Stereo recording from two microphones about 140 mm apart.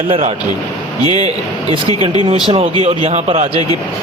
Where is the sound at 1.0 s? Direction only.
30° left (ahead or behind).